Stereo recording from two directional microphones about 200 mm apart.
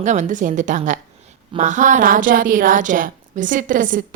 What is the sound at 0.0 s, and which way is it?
A woman's voice, 35° right (ahead or behind).